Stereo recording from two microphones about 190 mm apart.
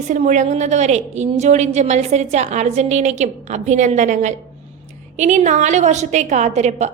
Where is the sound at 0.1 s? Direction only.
40° right (ahead or behind).